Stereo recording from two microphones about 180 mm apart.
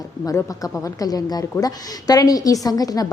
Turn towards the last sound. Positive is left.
turn(degrees=20)  # may be behind; listen again after turning